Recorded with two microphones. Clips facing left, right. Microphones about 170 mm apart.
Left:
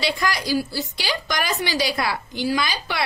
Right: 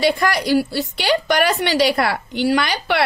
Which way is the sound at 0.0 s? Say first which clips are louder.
Right 6 dB; 55° right (ahead or behind).